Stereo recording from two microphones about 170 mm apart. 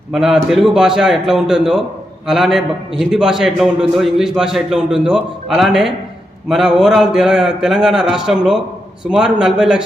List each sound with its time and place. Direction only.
0.1 s a man's voice: centre (ahead or behind)